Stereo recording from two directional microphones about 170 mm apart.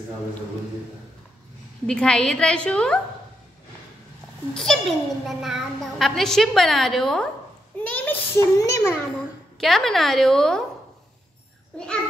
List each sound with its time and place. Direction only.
1.9 s a child's voice: 5° left (ahead or behind)
4.6 s a child's voice: centre (ahead or behind)
7.8 s a sound: 10° left (ahead or behind)
9.6 s a child's voice: centre (ahead or behind)